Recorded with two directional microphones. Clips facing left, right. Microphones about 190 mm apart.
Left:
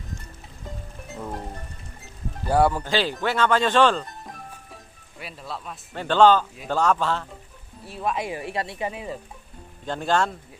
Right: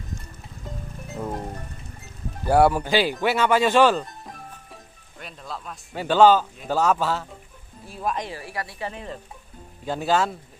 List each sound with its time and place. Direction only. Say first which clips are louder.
2.4 s speech: right 3 dB; 10° right (ahead or behind)
8.3 s speech: left 4 dB; 20° left (ahead or behind)
8.9 s stir: left 2 dB; 5° left (ahead or behind)
9.8 s speech: right 1 dB; 5° right (ahead or behind)